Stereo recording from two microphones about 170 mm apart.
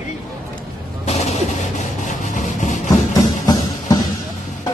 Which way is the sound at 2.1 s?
45° left (ahead or behind).